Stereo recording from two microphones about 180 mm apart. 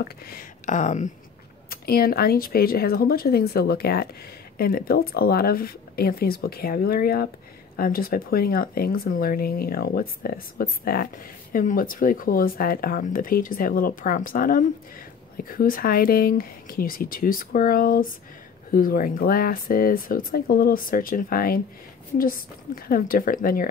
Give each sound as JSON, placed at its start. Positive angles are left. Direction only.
{"t": 0.0, "sound": "speech", "side_deg": 55}
{"t": 1.7, "sound": "speech", "side_deg": 55}